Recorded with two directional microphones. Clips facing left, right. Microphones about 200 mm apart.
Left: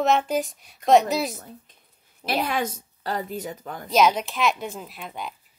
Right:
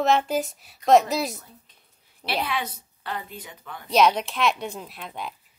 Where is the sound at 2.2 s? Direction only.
45° left (ahead or behind).